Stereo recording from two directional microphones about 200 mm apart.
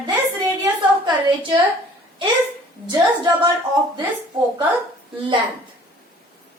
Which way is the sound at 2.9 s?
20° right (ahead or behind).